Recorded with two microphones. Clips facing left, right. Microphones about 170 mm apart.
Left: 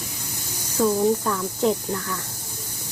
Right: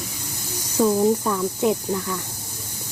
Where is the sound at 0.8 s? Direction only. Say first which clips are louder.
Right 2 dB; 15° right (ahead or behind).